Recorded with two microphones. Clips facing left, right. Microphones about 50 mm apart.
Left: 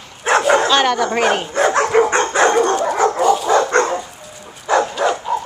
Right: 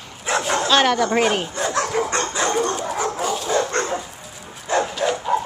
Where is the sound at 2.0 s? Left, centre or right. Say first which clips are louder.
Left 7 dB; left.